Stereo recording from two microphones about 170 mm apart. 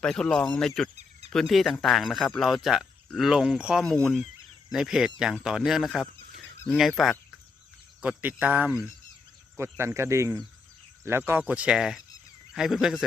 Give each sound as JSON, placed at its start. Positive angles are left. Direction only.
{"t": 0.0, "sound": "speech", "side_deg": 5}